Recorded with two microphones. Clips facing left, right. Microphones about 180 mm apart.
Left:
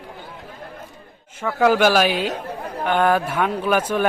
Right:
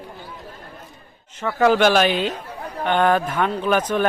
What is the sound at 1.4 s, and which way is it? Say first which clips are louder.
A man's voice: even; 10° left (ahead or behind).